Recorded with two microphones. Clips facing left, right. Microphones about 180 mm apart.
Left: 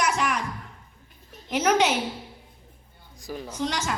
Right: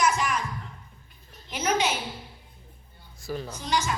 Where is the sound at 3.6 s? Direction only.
75° left (ahead or behind).